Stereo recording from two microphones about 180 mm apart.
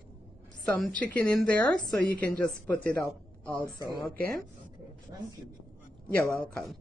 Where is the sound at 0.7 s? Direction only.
5° left (ahead or behind).